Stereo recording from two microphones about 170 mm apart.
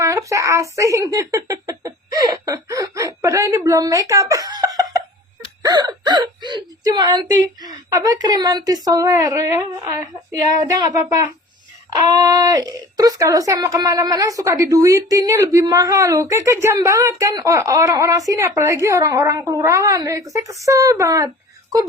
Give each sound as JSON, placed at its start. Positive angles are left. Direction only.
{"t": 0.0, "sound": "speech", "side_deg": -20}
{"t": 5.6, "sound": "whimper", "side_deg": -25}
{"t": 7.4, "sound": "speech", "side_deg": -20}